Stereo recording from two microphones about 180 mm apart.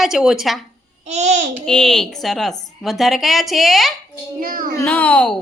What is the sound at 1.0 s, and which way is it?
Speech, 40° right (ahead or behind).